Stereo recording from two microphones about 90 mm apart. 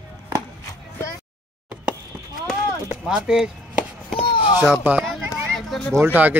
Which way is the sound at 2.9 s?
10° right (ahead or behind).